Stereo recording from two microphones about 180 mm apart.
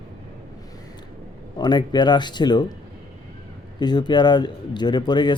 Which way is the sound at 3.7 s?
25° left (ahead or behind).